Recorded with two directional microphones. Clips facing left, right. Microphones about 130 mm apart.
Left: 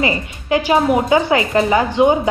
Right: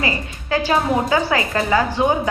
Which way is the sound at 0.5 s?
20° left (ahead or behind).